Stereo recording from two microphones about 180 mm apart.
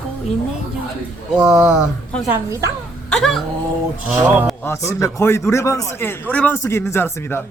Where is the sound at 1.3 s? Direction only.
5° right (ahead or behind).